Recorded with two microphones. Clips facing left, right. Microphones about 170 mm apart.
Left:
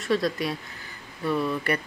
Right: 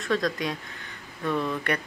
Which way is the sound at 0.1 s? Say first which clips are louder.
Left 2 dB; 5° left (ahead or behind).